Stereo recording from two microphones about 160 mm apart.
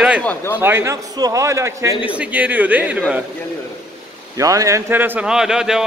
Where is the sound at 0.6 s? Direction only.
15° right (ahead or behind).